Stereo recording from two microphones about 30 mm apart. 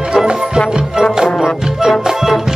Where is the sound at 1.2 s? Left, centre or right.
Centre.